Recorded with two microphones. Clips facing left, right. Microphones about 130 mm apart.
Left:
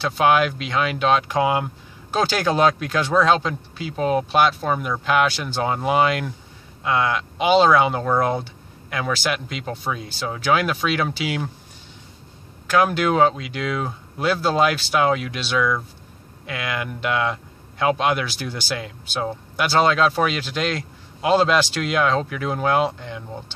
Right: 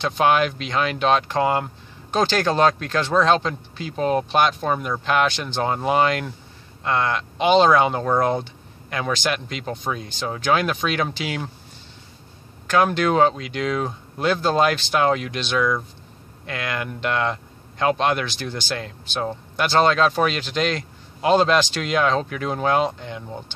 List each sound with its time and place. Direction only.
0.0 s speech: 5° left (ahead or behind)
12.6 s speech: 5° left (ahead or behind)